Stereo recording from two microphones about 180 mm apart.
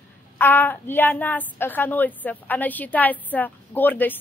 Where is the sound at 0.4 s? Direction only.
10° left (ahead or behind).